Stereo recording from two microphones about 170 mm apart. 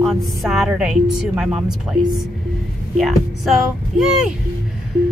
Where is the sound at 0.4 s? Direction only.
Centre (ahead or behind).